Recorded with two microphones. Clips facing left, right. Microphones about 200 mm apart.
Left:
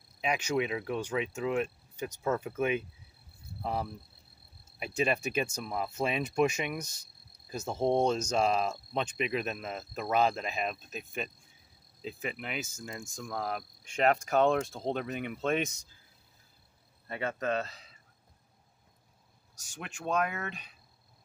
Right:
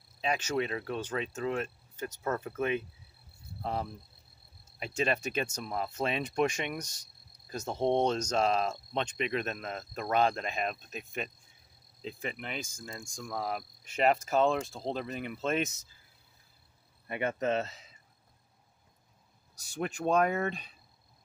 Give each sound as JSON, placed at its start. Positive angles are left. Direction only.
{"t": 0.2, "sound": "speech", "side_deg": 15}
{"t": 3.6, "sound": "speech", "side_deg": 5}
{"t": 17.1, "sound": "a man's voice", "side_deg": -20}
{"t": 19.6, "sound": "speech", "side_deg": -35}